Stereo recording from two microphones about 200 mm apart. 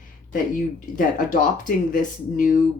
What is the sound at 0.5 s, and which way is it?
Speech, 40° left (ahead or behind).